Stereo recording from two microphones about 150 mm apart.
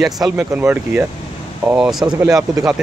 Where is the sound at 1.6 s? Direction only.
5° right (ahead or behind).